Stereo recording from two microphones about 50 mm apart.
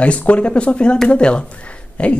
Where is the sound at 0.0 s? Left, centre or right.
Left.